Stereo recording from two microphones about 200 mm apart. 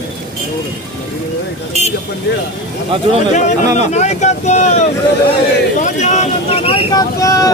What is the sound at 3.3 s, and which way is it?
Speech, 35° left (ahead or behind).